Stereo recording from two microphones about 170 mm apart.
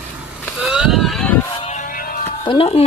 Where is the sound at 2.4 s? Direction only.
35° left (ahead or behind).